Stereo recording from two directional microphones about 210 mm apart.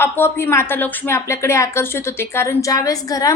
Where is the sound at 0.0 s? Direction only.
10° left (ahead or behind).